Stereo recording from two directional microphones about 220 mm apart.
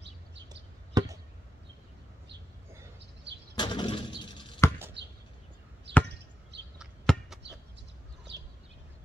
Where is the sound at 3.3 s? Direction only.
50° right (ahead or behind).